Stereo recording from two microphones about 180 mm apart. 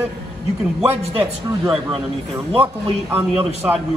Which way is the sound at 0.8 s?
15° right (ahead or behind).